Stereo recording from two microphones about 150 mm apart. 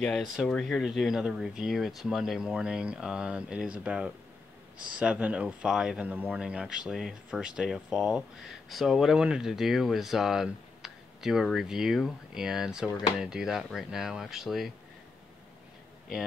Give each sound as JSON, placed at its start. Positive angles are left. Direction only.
{"t": 0.0, "sound": "speech", "side_deg": 5}